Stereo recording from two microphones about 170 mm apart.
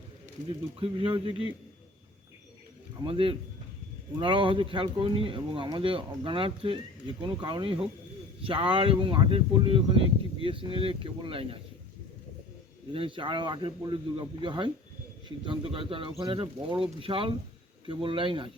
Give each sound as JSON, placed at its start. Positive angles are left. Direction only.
{"t": 0.8, "sound": "speech", "side_deg": -35}
{"t": 3.0, "sound": "speech", "side_deg": -30}
{"t": 12.9, "sound": "speech", "side_deg": -30}